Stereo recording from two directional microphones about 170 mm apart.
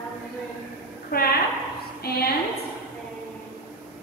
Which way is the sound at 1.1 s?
65° left (ahead or behind).